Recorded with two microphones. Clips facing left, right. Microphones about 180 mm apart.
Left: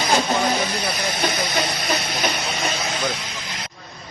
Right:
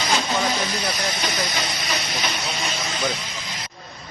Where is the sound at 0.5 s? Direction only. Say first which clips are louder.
Left 2 dB; 60° left (ahead or behind).